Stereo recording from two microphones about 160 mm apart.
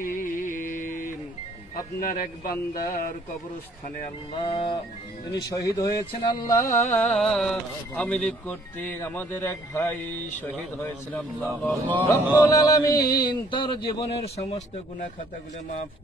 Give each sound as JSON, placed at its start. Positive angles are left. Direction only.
{"t": 0.0, "sound": "music", "side_deg": 55}
{"t": 2.0, "sound": "a man's voice", "side_deg": 60}
{"t": 4.4, "sound": "music", "side_deg": 35}
{"t": 5.8, "sound": "speech", "side_deg": 20}
{"t": 7.0, "sound": "speech", "side_deg": 5}